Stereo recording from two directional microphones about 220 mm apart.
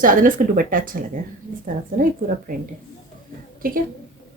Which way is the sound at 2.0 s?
40° right (ahead or behind).